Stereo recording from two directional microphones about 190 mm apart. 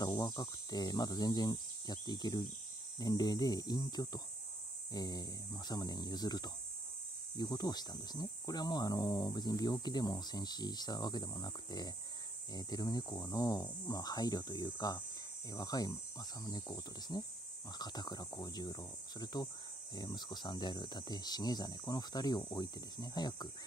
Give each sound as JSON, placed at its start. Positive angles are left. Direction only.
{"t": 0.0, "sound": "speech", "side_deg": 20}